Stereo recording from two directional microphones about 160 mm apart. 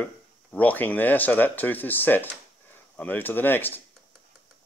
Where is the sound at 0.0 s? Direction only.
10° left (ahead or behind).